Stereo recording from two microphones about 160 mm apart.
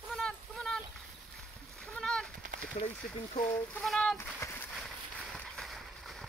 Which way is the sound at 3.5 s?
10° left (ahead or behind).